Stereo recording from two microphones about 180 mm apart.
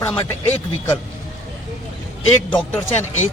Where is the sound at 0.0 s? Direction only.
10° left (ahead or behind).